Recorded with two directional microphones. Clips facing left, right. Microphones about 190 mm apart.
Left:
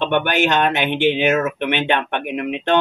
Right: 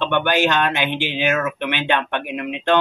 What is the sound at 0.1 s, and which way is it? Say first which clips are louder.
Speech: even; 55° left (ahead or behind).